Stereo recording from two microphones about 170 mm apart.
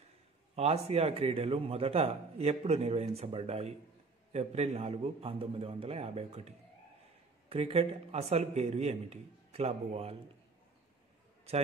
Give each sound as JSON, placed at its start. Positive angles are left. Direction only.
{"t": 0.6, "sound": "a man's voice", "side_deg": -35}